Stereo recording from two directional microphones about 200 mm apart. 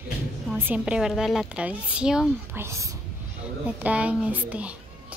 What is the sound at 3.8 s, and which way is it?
Speech, 5° right (ahead or behind).